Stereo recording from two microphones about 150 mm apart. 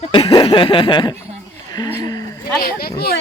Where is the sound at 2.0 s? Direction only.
25° left (ahead or behind).